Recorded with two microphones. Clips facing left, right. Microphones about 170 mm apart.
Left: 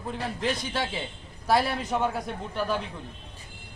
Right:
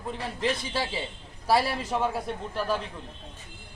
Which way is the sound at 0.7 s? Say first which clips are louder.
Even; 5° right (ahead or behind).